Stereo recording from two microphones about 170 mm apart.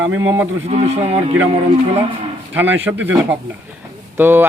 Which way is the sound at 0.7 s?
40° right (ahead or behind).